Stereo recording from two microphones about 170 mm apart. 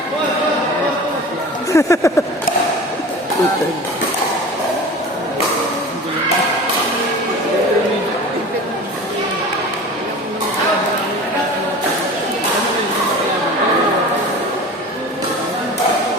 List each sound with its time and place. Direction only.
1.7 s speech: 15° left (ahead or behind)